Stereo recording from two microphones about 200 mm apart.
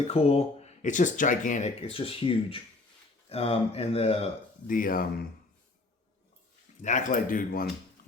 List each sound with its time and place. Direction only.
0.1 s speech: 30° left (ahead or behind)
6.8 s speech: 40° left (ahead or behind)